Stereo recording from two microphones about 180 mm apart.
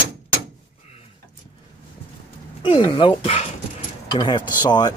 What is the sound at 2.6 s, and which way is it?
Speech, 25° left (ahead or behind).